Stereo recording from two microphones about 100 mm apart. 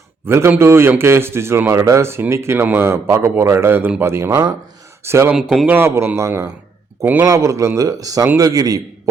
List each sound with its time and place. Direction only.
0.3 s speech: 25° right (ahead or behind)
5.3 s a man's voice: 5° right (ahead or behind)
5.6 s a man's voice: 20° right (ahead or behind)
7.0 s a man's voice: 15° right (ahead or behind)
7.3 s a man's voice: 35° right (ahead or behind)